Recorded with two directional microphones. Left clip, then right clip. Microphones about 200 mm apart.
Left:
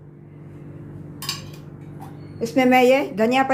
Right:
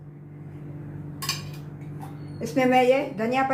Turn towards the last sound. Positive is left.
turn(degrees=50)  # may be behind; listen again after turning